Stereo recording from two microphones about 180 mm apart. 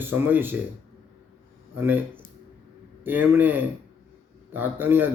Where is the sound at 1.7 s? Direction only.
10° right (ahead or behind).